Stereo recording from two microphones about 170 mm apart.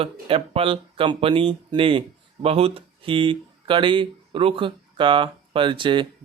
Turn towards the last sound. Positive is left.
turn(degrees=-30)  # may be behind; listen again after turning